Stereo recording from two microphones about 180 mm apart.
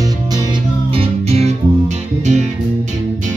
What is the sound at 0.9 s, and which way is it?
Music, 35° right (ahead or behind).